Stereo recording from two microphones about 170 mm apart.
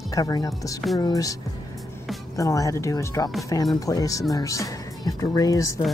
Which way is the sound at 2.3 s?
20° left (ahead or behind).